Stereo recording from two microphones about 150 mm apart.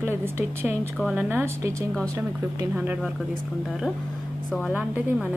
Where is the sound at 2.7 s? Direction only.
10° right (ahead or behind).